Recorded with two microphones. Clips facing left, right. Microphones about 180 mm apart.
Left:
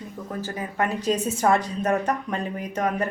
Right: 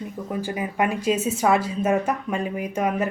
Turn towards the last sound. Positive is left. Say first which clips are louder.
# right 2 dB
turn(degrees=-10)  # may be behind; listen again after turning